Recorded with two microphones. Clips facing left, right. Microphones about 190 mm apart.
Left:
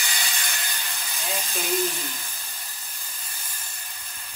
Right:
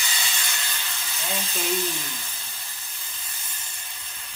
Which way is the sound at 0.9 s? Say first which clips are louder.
Even; 10° left (ahead or behind).